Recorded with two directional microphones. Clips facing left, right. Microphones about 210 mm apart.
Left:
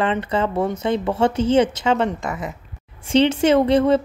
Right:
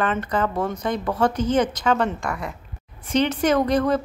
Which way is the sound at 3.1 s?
25° left (ahead or behind).